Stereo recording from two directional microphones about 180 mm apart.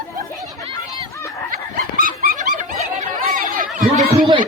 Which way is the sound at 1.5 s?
50° right (ahead or behind).